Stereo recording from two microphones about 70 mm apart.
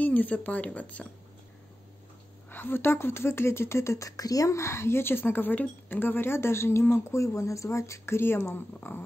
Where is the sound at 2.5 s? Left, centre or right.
Left.